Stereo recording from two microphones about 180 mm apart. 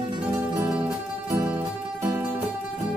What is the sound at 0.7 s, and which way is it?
Music, 10° right (ahead or behind).